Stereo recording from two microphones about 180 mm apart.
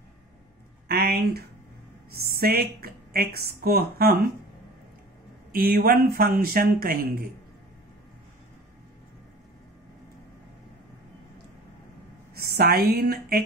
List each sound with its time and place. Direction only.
0.8 s a sound: 60° right (ahead or behind)
2.0 s a woman's voice: 60° right (ahead or behind)
5.5 s speech: 55° right (ahead or behind)
12.4 s speech: 60° right (ahead or behind)